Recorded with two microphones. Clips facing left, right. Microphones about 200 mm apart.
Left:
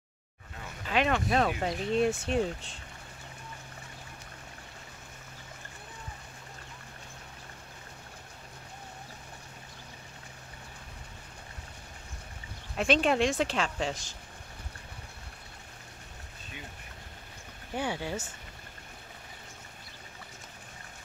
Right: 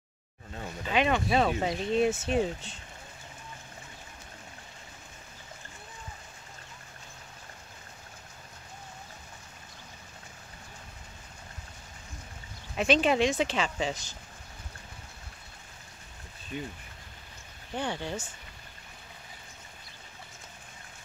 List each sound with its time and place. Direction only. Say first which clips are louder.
0.8 s a sound: right 1 dB; centre (ahead or behind)
1.6 s speech: right 1 dB; centre (ahead or behind)
12.7 s speech: right 1 dB; centre (ahead or behind)
16.5 s speech: right 10 dB; 45° right (ahead or behind)
17.7 s speech: even; 10° left (ahead or behind)